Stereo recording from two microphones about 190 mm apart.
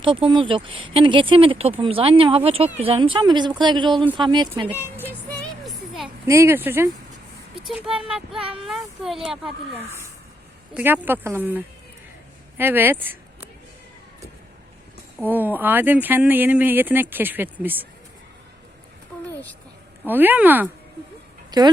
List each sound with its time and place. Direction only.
0.3 s speech: 25° right (ahead or behind)
5.6 s a sound: centre (ahead or behind)
6.2 s speech: 15° right (ahead or behind)
10.8 s speech: 10° right (ahead or behind)
15.3 s speech: 10° right (ahead or behind)
19.3 s a sound: 10° left (ahead or behind)
20.1 s speech: 10° right (ahead or behind)
21.5 s speech: 20° right (ahead or behind)